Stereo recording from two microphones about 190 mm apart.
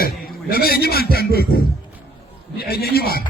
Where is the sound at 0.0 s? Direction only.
50° left (ahead or behind).